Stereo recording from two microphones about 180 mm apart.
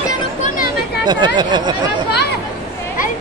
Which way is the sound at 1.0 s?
25° right (ahead or behind).